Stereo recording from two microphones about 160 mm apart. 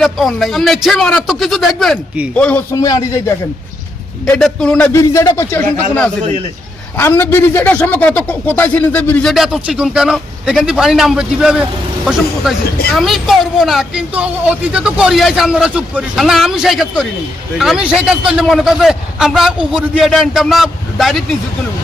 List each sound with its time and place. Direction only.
0.0 s speech: centre (ahead or behind)
2.3 s a man's voice: 5° left (ahead or behind)
2.7 s speech: 20° left (ahead or behind)
4.3 s speech: 5° left (ahead or behind)
4.9 s a man's voice: 20° left (ahead or behind)
6.9 s a man's voice: 15° left (ahead or behind)
9.3 s speech: centre (ahead or behind)